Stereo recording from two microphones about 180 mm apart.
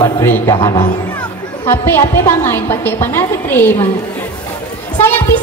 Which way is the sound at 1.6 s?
10° left (ahead or behind).